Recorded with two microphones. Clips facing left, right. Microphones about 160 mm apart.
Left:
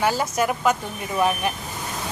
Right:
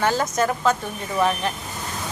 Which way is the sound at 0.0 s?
10° left (ahead or behind).